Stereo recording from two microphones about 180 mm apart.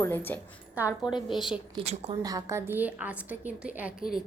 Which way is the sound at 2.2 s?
20° right (ahead or behind).